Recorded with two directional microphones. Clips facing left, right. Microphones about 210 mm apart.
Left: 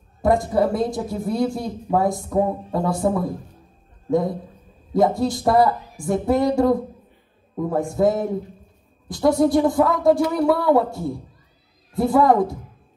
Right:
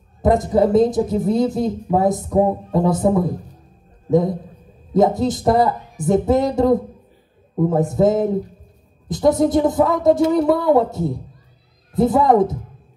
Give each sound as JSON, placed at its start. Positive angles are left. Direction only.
{"t": 0.2, "sound": "speech", "side_deg": -20}